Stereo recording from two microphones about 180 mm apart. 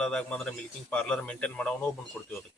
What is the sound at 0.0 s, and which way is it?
Speech, 5° left (ahead or behind).